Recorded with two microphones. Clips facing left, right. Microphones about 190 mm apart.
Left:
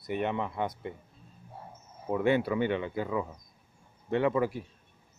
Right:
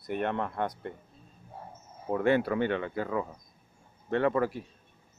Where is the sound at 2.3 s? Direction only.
50° right (ahead or behind).